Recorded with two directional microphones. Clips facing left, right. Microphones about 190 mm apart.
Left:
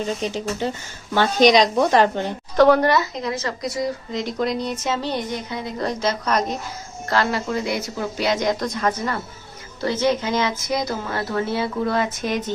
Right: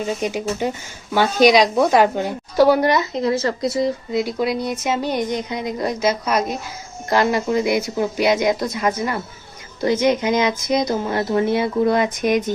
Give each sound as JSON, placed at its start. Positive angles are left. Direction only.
{"t": 0.0, "sound": "a woman's voice", "side_deg": -10}
{"t": 4.1, "sound": "a woman's voice", "side_deg": -10}